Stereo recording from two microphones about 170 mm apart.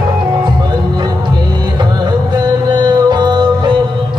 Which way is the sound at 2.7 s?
25° right (ahead or behind).